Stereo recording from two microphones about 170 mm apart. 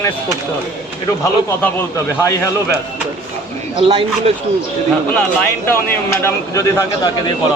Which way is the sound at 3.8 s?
30° right (ahead or behind).